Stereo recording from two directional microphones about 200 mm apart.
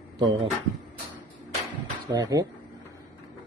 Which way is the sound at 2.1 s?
20° right (ahead or behind).